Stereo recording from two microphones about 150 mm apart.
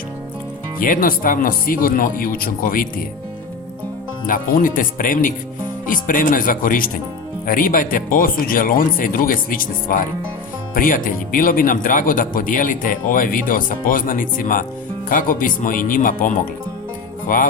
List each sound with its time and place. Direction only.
0.8 s speech: 65° left (ahead or behind)
4.3 s speech: 65° left (ahead or behind)
17.2 s music: 65° left (ahead or behind)